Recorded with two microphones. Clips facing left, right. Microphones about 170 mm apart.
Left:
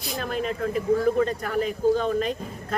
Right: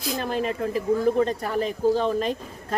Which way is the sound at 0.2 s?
35° right (ahead or behind).